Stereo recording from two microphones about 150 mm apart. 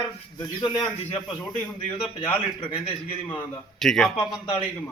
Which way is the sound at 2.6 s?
35° left (ahead or behind).